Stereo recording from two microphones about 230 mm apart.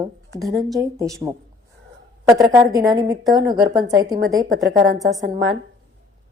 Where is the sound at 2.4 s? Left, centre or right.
Centre.